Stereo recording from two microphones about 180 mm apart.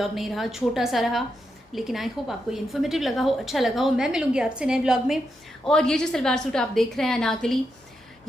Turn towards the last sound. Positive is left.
turn(degrees=0)  # may be behind; listen again after turning